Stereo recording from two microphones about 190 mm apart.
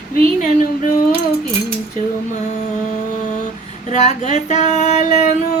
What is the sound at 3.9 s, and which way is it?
Female singing, 35° left (ahead or behind).